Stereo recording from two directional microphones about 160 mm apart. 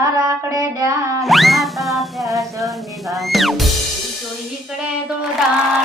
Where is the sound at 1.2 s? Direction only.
Centre (ahead or behind).